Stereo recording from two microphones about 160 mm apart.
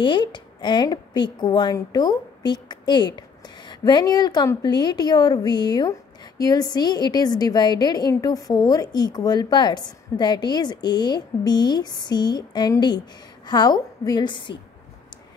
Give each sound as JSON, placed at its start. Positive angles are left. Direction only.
{"t": 0.0, "sound": "a woman's voice", "side_deg": 30}